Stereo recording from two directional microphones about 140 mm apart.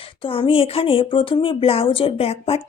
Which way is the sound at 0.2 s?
40° left (ahead or behind).